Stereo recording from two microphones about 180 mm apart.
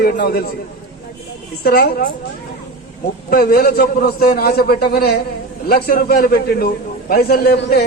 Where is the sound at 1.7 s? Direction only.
55° left (ahead or behind).